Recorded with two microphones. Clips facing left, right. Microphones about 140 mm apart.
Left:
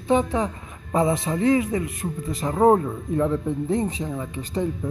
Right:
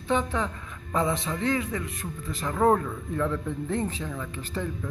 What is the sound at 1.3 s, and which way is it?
A man's voice, 25° left (ahead or behind).